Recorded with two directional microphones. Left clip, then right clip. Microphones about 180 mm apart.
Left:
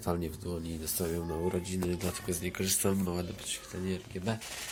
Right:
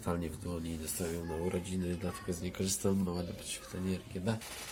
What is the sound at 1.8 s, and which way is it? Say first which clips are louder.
Speech: left 4 dB; 10° left (ahead or behind).